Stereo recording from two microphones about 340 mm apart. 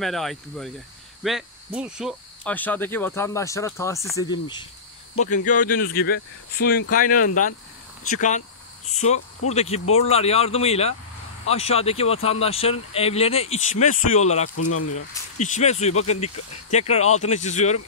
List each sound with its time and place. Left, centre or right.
0.0 s speech: centre; by 8.5 s left
9.5 s speech: centre
14.6 s speech: left
15.3 s speech: left